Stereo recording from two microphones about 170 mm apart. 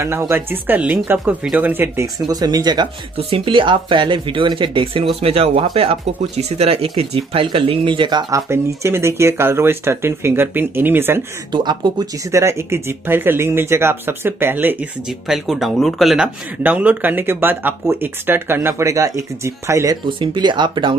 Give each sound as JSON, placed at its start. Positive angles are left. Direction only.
{"t": 0.0, "sound": "speech", "side_deg": -15}
{"t": 11.5, "sound": "speech", "side_deg": -25}
{"t": 20.1, "sound": "speech", "side_deg": -30}